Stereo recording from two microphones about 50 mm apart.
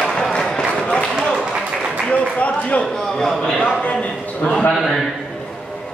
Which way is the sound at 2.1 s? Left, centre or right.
Left.